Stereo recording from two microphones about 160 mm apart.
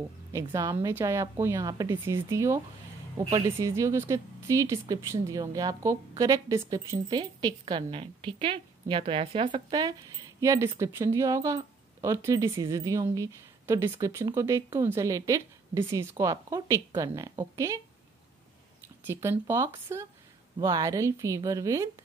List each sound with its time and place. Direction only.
0.3 s speech: 20° right (ahead or behind)
19.0 s speech: 15° right (ahead or behind)